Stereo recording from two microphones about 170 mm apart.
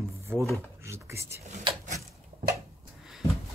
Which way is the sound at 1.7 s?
30° right (ahead or behind).